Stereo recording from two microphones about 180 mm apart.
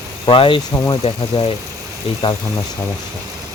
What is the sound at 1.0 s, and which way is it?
Speech, 35° left (ahead or behind).